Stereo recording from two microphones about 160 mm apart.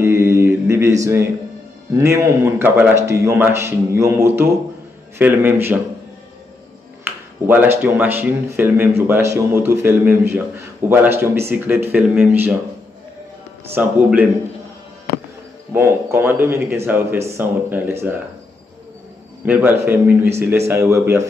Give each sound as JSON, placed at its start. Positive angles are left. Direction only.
{"t": 0.0, "sound": "mantra", "side_deg": -15}
{"t": 1.0, "sound": "a man's voice", "side_deg": -15}
{"t": 7.4, "sound": "a man's voice", "side_deg": -10}
{"t": 13.7, "sound": "a man's voice", "side_deg": -15}
{"t": 15.7, "sound": "a man's voice", "side_deg": -15}
{"t": 19.4, "sound": "a man's voice", "side_deg": -10}